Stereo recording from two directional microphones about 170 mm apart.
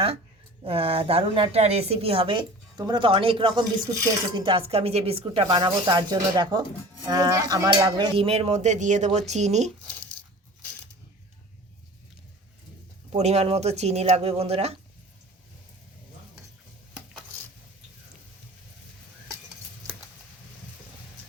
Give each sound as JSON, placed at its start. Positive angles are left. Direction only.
{"t": 0.6, "sound": "a woman's voice", "side_deg": -35}
{"t": 8.3, "sound": "speech", "side_deg": -40}
{"t": 13.1, "sound": "a woman's voice", "side_deg": -40}